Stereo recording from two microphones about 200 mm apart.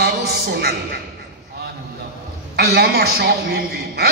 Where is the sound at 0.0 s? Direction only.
55° right (ahead or behind).